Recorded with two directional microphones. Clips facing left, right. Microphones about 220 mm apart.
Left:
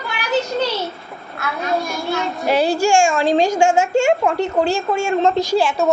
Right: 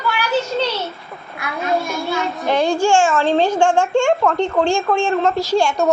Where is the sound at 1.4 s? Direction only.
15° right (ahead or behind).